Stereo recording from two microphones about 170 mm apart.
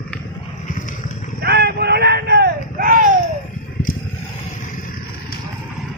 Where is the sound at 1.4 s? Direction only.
70° right (ahead or behind).